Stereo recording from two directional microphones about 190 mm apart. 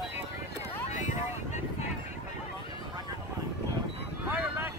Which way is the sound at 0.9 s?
40° left (ahead or behind).